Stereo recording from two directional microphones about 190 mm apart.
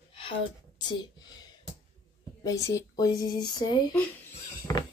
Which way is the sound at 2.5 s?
15° left (ahead or behind).